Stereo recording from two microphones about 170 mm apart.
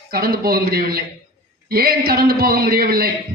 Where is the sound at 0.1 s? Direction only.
60° right (ahead or behind).